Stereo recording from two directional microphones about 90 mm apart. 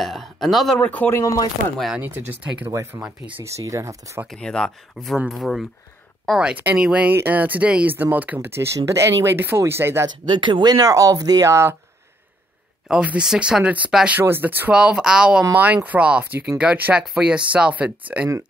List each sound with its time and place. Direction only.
0.0 s speech: centre (ahead or behind)
0.7 s speech: 15° left (ahead or behind)
1.1 s chopping: 35° left (ahead or behind)
2.0 s speech: 20° right (ahead or behind)
2.7 s speech: 30° right (ahead or behind)
3.0 s speech: 15° right (ahead or behind)
3.4 s speech: 35° right (ahead or behind)
4.3 s speech: 5° left (ahead or behind); by 10.0 s 30° right (ahead or behind)
10.0 s speech: 60° right (ahead or behind)
10.7 s speech: 40° right (ahead or behind)
12.8 s speech: 10° right (ahead or behind)
14.2 s speech: 25° right (ahead or behind)